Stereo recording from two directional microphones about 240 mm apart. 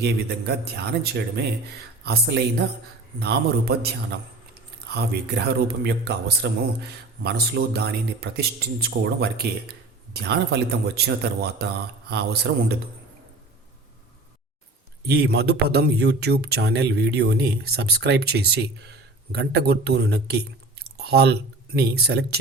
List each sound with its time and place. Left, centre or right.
0.0 s speech: right
4.9 s speech: right
15.0 s speech: right